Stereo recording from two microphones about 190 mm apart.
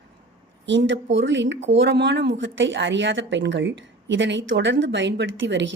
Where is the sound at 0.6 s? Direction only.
75° right (ahead or behind).